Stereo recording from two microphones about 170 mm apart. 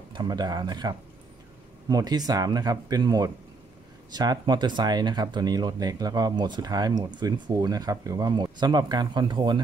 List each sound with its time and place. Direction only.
0.1 s speech: 25° right (ahead or behind)